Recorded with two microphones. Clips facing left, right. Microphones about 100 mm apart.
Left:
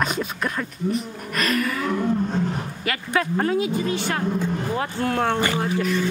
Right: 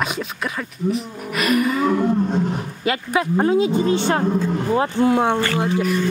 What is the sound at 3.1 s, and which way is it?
A woman's voice, 20° right (ahead or behind).